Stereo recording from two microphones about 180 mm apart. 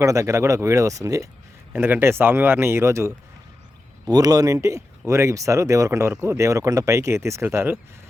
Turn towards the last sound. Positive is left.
turn(degrees=-15)  # may be behind; listen again after turning